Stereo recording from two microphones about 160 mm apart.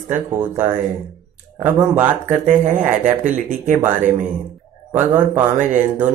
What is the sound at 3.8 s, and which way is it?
Speech, 10° right (ahead or behind).